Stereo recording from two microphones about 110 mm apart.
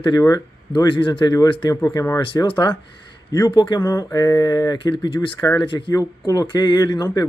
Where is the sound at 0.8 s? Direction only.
50° left (ahead or behind).